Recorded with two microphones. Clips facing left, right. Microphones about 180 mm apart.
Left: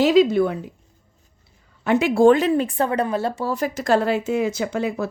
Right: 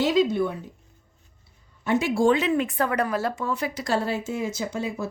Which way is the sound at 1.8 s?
65° left (ahead or behind).